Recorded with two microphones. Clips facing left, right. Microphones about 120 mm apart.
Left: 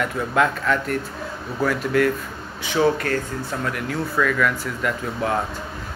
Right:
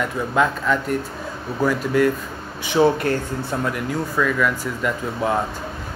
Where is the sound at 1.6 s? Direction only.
10° right (ahead or behind).